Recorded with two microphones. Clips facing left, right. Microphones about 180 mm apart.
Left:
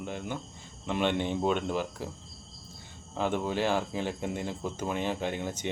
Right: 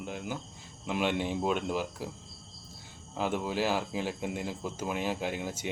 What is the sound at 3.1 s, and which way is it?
Speech, 5° right (ahead or behind).